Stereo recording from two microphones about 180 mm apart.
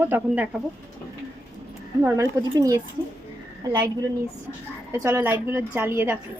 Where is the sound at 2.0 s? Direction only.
15° right (ahead or behind).